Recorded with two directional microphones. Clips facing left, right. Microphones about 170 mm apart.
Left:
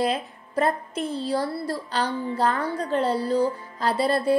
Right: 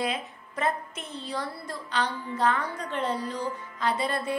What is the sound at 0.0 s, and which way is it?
A woman's voice, 35° left (ahead or behind).